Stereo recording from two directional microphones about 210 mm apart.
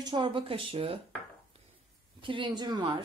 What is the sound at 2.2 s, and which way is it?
Speech, 25° right (ahead or behind).